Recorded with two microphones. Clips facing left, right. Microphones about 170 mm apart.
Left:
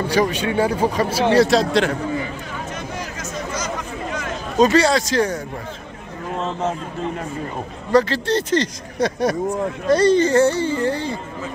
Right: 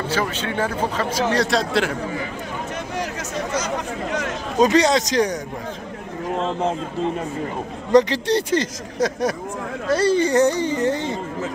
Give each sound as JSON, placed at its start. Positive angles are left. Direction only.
{"t": 0.1, "sound": "speech", "side_deg": 15}
{"t": 3.5, "sound": "chatter", "side_deg": -70}
{"t": 4.6, "sound": "speech", "side_deg": -15}
{"t": 7.9, "sound": "speech", "side_deg": -15}
{"t": 9.0, "sound": "speech", "side_deg": 0}